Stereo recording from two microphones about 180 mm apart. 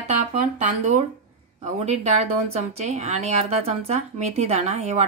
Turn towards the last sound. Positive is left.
turn(degrees=-35)  # may be behind; listen again after turning